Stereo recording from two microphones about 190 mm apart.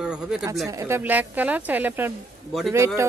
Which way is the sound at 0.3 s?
5° right (ahead or behind).